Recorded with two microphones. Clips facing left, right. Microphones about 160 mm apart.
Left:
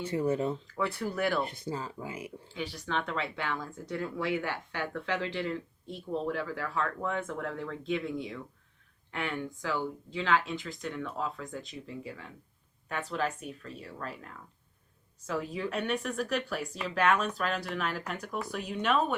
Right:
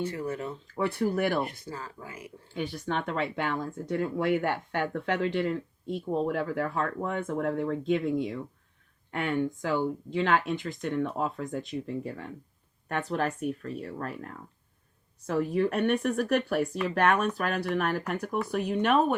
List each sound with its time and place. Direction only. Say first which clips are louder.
0.1 s speech: left 4 dB; 25° left (ahead or behind)
0.8 s speech: right 6 dB; 50° right (ahead or behind)
1.5 s speech: left 3 dB; 20° left (ahead or behind)
2.6 s speech: right 3 dB; 50° right (ahead or behind)